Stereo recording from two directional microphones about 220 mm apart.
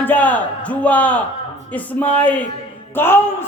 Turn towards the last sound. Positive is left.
turn(degrees=10)  # may be behind; listen again after turning